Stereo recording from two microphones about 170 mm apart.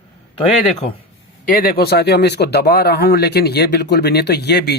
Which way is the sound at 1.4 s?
60° left (ahead or behind).